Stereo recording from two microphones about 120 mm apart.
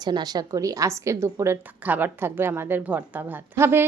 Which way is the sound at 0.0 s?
35° right (ahead or behind).